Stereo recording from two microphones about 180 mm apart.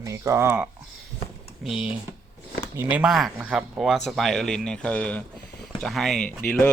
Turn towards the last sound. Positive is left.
turn(degrees=10)  # may be behind; listen again after turning